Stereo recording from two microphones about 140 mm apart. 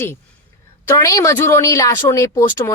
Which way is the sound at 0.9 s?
20° left (ahead or behind).